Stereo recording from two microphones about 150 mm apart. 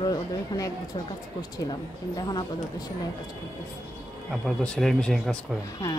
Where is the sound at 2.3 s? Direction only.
25° left (ahead or behind).